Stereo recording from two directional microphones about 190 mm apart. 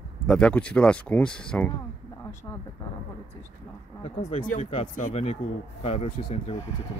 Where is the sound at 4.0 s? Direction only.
30° left (ahead or behind).